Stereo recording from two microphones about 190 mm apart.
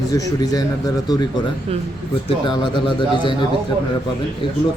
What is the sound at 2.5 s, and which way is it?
Speech, 25° left (ahead or behind).